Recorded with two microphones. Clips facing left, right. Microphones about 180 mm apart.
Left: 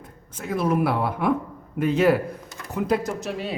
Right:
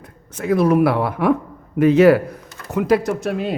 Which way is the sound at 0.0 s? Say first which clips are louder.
Right 9 dB; 75° right (ahead or behind).